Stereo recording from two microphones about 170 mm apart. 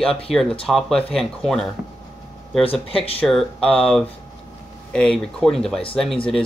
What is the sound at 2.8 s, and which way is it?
Speech, 35° left (ahead or behind).